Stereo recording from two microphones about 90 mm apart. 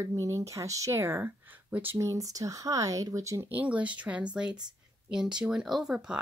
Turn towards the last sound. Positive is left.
turn(degrees=-5)  # may be behind; listen again after turning